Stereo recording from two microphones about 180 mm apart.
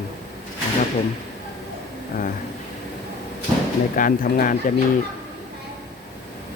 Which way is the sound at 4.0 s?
50° left (ahead or behind).